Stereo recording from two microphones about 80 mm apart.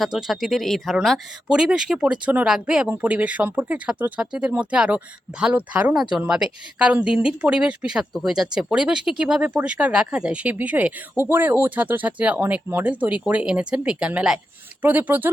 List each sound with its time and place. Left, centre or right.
0.0 s speech: centre
1.5 s speech: centre
5.9 s speech: centre